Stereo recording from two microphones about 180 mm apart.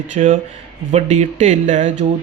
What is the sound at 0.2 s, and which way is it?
Speech, 35° right (ahead or behind).